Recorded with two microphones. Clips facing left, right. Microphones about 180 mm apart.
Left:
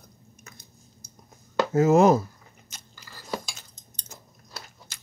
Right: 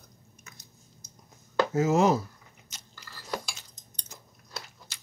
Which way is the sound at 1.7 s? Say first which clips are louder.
Left 6 dB; 50° left (ahead or behind).